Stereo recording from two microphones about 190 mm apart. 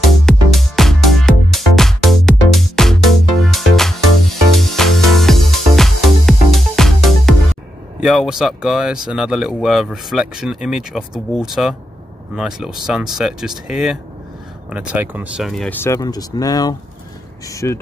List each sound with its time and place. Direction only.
0.1 s music: centre (ahead or behind)
8.0 s speech: centre (ahead or behind); by 17.7 s 15° left (ahead or behind)